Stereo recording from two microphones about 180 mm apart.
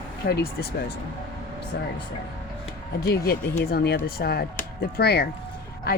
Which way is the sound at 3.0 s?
65° left (ahead or behind).